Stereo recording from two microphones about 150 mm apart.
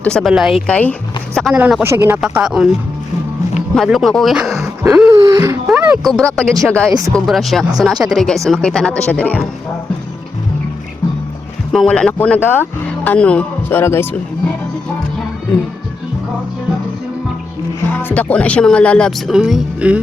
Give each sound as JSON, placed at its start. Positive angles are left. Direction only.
{"t": 0.0, "sound": "speech", "side_deg": 5}
{"t": 0.7, "sound": "speech", "side_deg": 10}
{"t": 1.5, "sound": "speech", "side_deg": -10}
{"t": 2.2, "sound": "speech", "side_deg": -5}
{"t": 3.8, "sound": "speech", "side_deg": 0}
{"t": 5.1, "sound": "speech", "side_deg": -25}
{"t": 5.6, "sound": "speech", "side_deg": -5}
{"t": 11.7, "sound": "speech", "side_deg": 5}
{"t": 17.9, "sound": "speech", "side_deg": 10}